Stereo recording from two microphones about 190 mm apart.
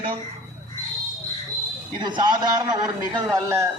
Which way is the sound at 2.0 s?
25° right (ahead or behind).